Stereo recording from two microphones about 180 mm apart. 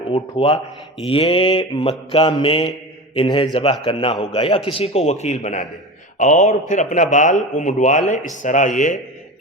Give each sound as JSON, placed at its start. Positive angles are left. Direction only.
{"t": 0.1, "sound": "a man's voice", "side_deg": 30}